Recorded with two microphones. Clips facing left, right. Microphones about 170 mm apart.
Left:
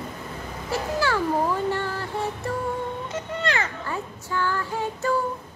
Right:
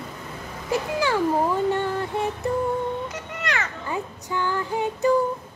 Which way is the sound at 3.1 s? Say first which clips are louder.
Left 3 dB; 30° left (ahead or behind).